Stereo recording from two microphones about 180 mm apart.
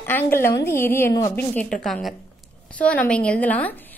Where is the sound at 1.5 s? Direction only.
5° left (ahead or behind).